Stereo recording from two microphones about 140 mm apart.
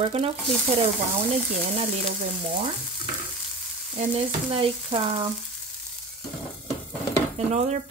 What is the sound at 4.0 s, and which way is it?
Speech, 45° right (ahead or behind).